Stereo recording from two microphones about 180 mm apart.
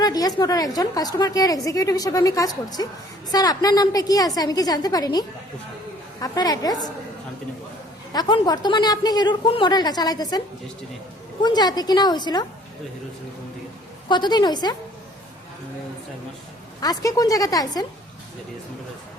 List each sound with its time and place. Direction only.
0.0 s a woman's voice: 20° left (ahead or behind)
8.1 s a woman's voice: 20° left (ahead or behind)
11.4 s a woman's voice: 25° left (ahead or behind)
14.1 s a woman's voice: 25° left (ahead or behind)
16.8 s a woman's voice: 20° left (ahead or behind)